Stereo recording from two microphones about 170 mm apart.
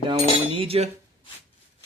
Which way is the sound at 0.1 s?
30° right (ahead or behind).